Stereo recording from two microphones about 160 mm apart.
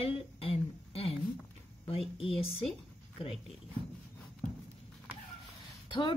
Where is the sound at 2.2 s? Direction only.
35° left (ahead or behind).